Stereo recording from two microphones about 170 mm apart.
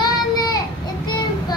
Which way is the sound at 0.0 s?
25° left (ahead or behind).